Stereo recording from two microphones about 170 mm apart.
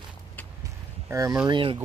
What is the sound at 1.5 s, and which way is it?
Speech, 30° right (ahead or behind).